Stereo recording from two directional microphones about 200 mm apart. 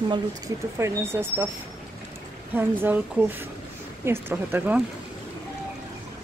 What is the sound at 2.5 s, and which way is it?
Speech, 10° right (ahead or behind).